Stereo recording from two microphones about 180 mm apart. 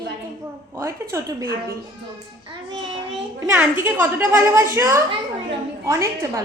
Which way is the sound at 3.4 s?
15° right (ahead or behind).